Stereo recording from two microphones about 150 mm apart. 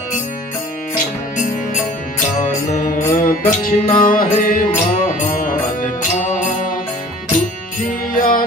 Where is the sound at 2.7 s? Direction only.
60° left (ahead or behind).